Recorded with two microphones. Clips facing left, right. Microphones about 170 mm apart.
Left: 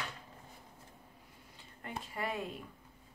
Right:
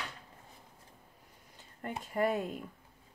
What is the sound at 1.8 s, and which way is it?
Speech, 45° right (ahead or behind).